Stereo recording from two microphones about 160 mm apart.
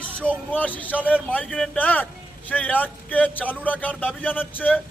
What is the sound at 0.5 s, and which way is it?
A man's voice, 10° left (ahead or behind).